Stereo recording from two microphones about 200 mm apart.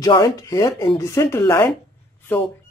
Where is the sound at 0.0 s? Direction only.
20° left (ahead or behind).